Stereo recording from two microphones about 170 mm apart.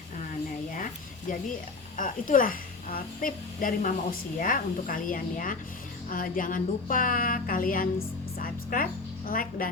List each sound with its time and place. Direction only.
1.3 s a woman's voice: 50° left (ahead or behind)